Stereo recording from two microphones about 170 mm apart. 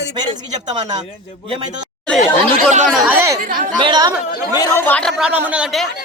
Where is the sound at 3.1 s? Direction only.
15° right (ahead or behind).